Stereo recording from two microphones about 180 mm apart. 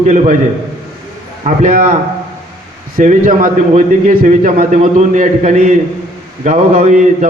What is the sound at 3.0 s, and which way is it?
A man's voice, 45° right (ahead or behind).